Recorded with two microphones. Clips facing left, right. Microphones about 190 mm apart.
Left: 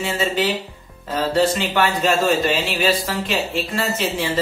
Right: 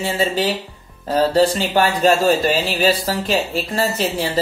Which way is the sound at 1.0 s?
35° right (ahead or behind).